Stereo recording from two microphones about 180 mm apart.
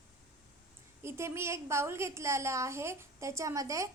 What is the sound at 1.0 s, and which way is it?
A woman's voice, 15° right (ahead or behind).